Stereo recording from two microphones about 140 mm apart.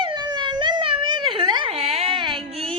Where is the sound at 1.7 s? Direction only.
45° right (ahead or behind).